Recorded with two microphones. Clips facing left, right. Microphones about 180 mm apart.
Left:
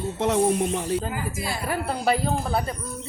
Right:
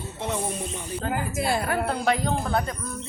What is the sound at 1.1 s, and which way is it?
Speech, 55° right (ahead or behind).